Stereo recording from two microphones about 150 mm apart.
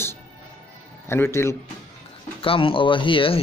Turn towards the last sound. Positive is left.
turn(degrees=35)  # may be behind; listen again after turning